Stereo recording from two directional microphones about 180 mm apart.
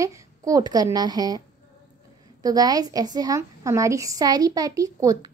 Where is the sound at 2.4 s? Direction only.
20° right (ahead or behind).